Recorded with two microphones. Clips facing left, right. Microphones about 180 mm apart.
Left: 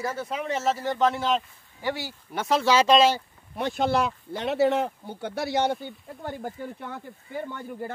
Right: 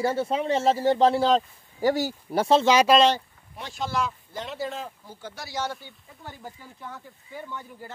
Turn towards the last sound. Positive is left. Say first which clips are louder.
# left 5 dB
turn(degrees=55)  # may be behind; listen again after turning